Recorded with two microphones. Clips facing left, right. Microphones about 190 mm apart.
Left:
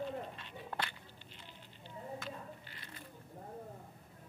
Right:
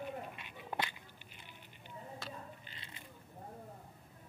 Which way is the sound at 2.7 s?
20° right (ahead or behind).